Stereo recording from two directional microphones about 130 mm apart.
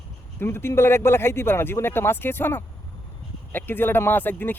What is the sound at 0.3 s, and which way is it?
Speech, 20° left (ahead or behind).